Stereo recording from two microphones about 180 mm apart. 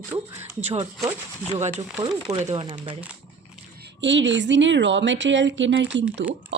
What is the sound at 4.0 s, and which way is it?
A woman's voice, 85° right.